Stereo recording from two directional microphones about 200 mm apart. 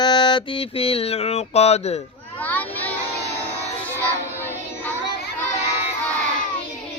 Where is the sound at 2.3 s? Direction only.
10° left (ahead or behind).